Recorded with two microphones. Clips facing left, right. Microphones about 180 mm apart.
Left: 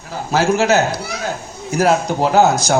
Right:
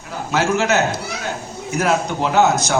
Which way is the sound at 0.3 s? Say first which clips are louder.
Left 3 dB; 35° left (ahead or behind).